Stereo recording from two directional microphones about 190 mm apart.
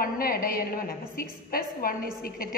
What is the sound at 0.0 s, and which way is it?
A woman's voice, 50° left (ahead or behind).